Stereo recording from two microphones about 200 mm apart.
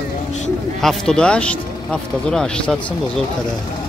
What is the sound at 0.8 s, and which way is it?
Speech, 5° left (ahead or behind).